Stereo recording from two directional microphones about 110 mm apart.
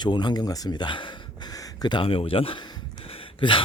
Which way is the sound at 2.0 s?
55° left (ahead or behind).